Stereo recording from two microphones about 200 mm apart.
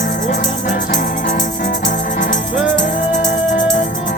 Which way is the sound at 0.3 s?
40° left (ahead or behind).